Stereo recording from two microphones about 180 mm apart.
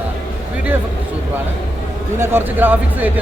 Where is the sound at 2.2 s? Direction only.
15° right (ahead or behind).